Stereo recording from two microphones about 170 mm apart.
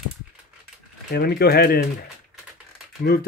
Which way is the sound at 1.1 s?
70° left (ahead or behind).